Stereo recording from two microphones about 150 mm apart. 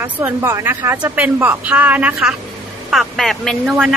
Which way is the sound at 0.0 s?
15° right (ahead or behind).